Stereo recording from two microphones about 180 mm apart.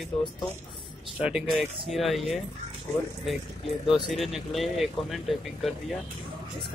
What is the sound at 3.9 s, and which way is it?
Speech, centre (ahead or behind).